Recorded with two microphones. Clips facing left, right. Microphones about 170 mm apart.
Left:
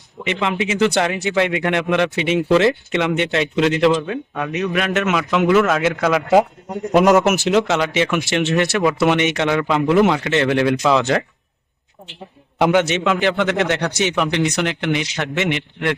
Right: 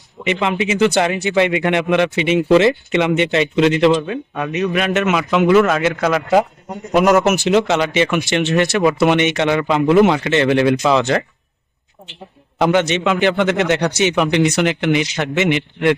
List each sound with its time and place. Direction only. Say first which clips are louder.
0.3 s speech: right 3 dB; 5° right (ahead or behind)
6.9 s speech: even; 20° left (ahead or behind)
7.3 s speech: right 2 dB; centre (ahead or behind)